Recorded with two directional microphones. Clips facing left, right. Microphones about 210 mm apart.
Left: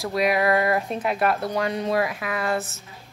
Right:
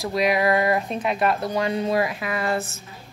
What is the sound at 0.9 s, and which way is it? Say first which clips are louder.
Speech: right 1 dB; 20° right (ahead or behind).